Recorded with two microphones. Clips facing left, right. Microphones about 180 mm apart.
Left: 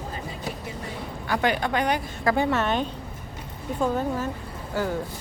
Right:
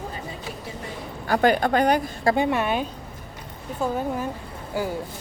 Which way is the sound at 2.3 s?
15° right (ahead or behind).